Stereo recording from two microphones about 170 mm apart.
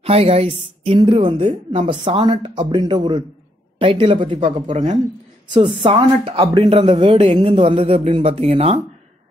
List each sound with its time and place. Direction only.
0.0 s a woman's voice: 35° right (ahead or behind)
5.5 s a woman's voice: 30° right (ahead or behind)